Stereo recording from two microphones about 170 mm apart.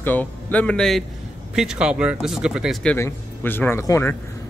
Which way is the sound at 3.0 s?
15° left (ahead or behind).